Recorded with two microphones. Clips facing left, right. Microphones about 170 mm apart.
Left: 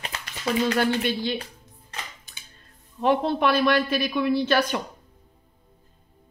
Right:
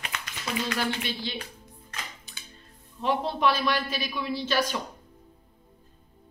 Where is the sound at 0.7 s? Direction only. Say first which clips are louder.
Left 7 dB; 50° left (ahead or behind).